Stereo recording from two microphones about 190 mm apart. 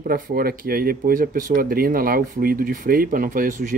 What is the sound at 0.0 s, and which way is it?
Speech, 50° right (ahead or behind).